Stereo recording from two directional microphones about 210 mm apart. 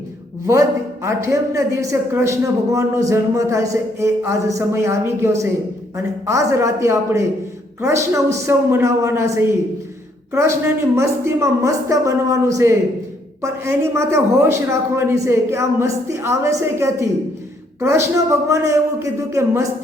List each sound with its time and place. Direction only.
1.0 s speech: 15° right (ahead or behind)